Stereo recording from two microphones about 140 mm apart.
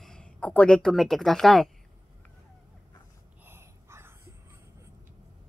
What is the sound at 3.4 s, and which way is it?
Wheeze, 15° right (ahead or behind).